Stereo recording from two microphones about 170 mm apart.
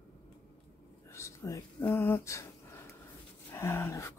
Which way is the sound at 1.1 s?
20° left (ahead or behind).